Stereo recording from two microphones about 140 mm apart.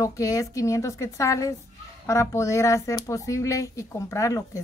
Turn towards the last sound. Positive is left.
turn(degrees=20)  # may be behind; listen again after turning